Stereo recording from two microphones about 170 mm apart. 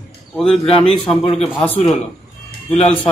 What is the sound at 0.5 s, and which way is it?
Speech, 35° left (ahead or behind).